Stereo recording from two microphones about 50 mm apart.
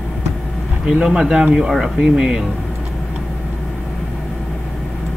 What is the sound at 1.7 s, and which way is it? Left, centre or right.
Speech, centre.